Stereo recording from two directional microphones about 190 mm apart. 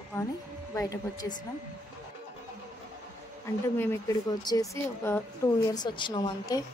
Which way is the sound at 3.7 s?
10° left (ahead or behind).